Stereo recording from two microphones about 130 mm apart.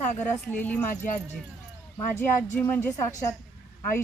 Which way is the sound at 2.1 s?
10° left (ahead or behind).